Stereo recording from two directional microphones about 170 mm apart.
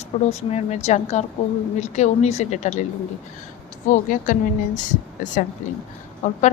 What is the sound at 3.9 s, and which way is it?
Speech, 50° left (ahead or behind).